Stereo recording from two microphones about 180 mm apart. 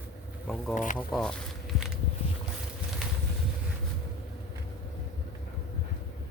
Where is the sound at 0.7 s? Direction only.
45° left (ahead or behind).